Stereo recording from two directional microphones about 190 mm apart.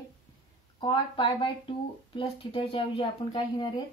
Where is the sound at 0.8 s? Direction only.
25° left (ahead or behind).